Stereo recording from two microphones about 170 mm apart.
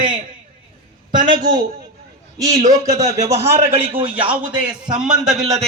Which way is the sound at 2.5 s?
45° right (ahead or behind).